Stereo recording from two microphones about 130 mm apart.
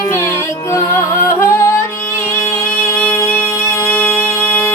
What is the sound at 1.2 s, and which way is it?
Music, 20° left (ahead or behind).